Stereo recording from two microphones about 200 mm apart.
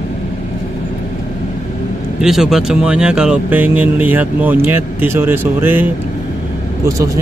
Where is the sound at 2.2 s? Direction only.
Centre (ahead or behind).